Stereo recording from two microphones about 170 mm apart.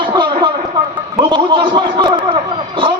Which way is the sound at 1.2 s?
30° right (ahead or behind).